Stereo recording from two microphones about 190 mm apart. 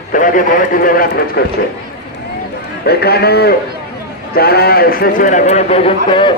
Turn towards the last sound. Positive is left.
turn(degrees=25)  # may be behind; listen again after turning